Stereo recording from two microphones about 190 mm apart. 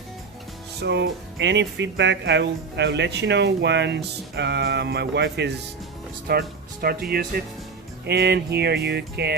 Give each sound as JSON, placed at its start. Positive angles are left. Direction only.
{"t": 0.8, "sound": "speech", "side_deg": -65}